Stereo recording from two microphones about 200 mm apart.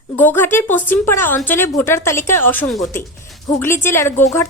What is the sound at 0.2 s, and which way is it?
A woman's voice, 10° left (ahead or behind).